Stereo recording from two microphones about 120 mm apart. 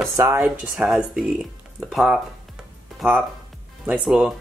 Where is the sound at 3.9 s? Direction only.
5° right (ahead or behind).